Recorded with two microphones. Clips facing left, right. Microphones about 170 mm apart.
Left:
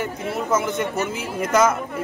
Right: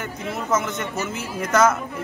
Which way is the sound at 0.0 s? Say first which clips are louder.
Left 3 dB; 10° left (ahead or behind).